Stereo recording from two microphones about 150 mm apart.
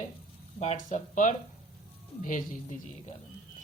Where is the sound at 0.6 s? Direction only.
50° left (ahead or behind).